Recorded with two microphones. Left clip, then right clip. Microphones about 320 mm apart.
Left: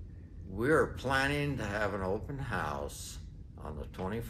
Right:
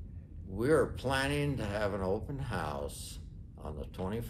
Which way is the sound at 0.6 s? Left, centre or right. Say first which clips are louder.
Even; centre.